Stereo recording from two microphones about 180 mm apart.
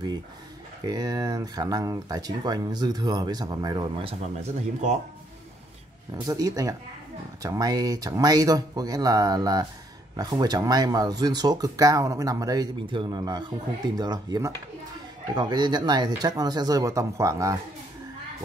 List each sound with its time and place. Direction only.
0.8 s speech: 20° right (ahead or behind)
6.1 s speech: 20° right (ahead or behind)